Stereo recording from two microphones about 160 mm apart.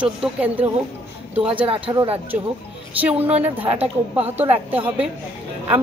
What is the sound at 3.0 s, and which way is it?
Speech, 10° right (ahead or behind).